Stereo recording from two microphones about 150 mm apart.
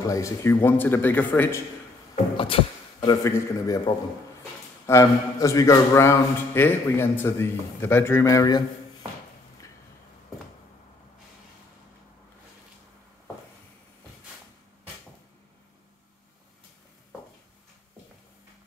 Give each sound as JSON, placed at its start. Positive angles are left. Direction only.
{"t": 0.0, "sound": "speech", "side_deg": 20}
{"t": 2.3, "sound": "a sound", "side_deg": 35}
{"t": 3.1, "sound": "a man's voice", "side_deg": 20}